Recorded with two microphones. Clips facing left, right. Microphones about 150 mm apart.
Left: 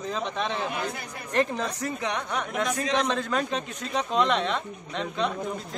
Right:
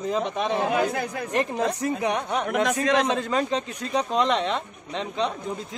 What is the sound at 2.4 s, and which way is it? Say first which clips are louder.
Speech: right 7 dB; 60° right (ahead or behind).